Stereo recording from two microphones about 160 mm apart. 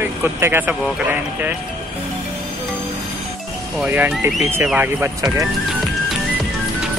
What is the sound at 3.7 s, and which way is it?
Speech, 10° right (ahead or behind).